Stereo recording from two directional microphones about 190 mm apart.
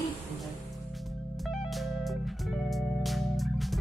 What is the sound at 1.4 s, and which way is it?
Music, centre (ahead or behind).